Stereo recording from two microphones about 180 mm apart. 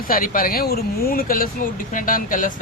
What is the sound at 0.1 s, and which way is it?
Speech, 50° left (ahead or behind).